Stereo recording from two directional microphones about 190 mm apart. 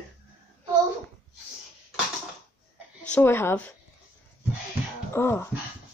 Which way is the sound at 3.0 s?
10° left (ahead or behind).